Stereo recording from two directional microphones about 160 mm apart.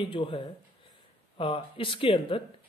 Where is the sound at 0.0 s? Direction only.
35° left (ahead or behind).